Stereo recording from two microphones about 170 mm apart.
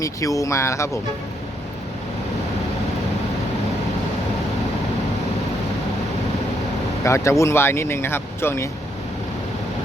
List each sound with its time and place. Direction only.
0.0 s speech: 20° left (ahead or behind)
7.0 s speech: 15° left (ahead or behind)